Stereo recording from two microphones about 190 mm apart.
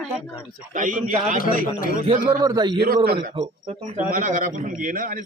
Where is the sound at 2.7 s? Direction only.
55° right (ahead or behind).